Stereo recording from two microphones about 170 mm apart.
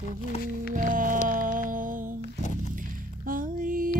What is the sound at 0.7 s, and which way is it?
Music, 55° right (ahead or behind).